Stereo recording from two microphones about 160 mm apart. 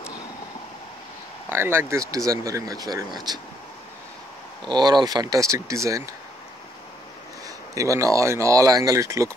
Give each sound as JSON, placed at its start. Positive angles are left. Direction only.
{"t": 1.5, "sound": "speech", "side_deg": -15}
{"t": 4.6, "sound": "speech", "side_deg": -25}
{"t": 7.4, "sound": "speech", "side_deg": -20}